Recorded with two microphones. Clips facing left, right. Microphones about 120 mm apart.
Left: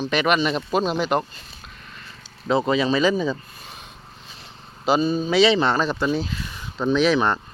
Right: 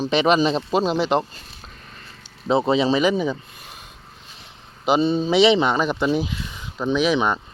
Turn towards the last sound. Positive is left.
turn(degrees=-10)  # may be behind; listen again after turning